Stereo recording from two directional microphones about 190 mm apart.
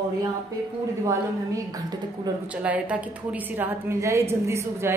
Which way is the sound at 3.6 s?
15° right (ahead or behind).